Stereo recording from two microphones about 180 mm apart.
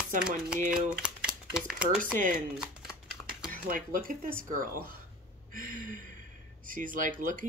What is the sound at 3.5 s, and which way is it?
Speech, 50° right (ahead or behind).